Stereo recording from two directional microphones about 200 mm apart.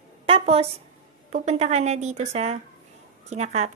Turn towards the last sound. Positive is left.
turn(degrees=-35)  # may be behind; listen again after turning